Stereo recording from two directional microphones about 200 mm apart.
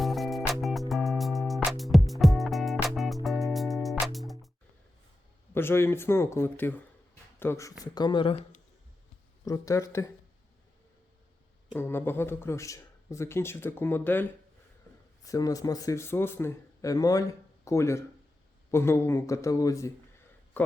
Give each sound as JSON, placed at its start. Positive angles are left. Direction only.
{"t": 0.0, "sound": "music", "side_deg": 0}
{"t": 5.5, "sound": "speech", "side_deg": 10}
{"t": 9.4, "sound": "speech", "side_deg": 15}
{"t": 11.8, "sound": "speech", "side_deg": 10}
{"t": 20.6, "sound": "a sound", "side_deg": 10}